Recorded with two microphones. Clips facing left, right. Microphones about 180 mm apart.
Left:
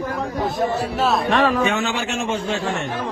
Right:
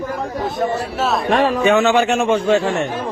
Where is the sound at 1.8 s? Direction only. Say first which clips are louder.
Right 9 dB; 60° right (ahead or behind).